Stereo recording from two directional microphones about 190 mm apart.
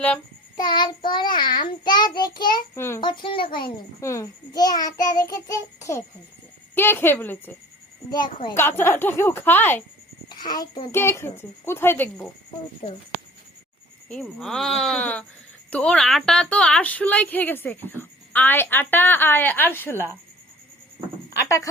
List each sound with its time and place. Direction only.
0.5 s child singing: 20° left (ahead or behind)
3.1 s child singing: 25° left (ahead or behind)
4.0 s child singing: 15° left (ahead or behind)
6.7 s a woman's voice: 10° left (ahead or behind)
8.1 s child singing: 25° left (ahead or behind)
8.5 s a woman's voice: 10° left (ahead or behind)
10.2 s a sound: 20° left (ahead or behind)
10.9 s a woman's voice: 15° left (ahead or behind)
12.8 s child singing: 25° left (ahead or behind)
14.1 s a woman's voice: 5° left (ahead or behind)
21.4 s speech: 15° left (ahead or behind)